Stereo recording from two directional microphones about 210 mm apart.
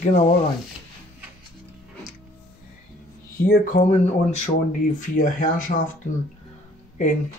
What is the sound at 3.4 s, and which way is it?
Speech, 35° left (ahead or behind).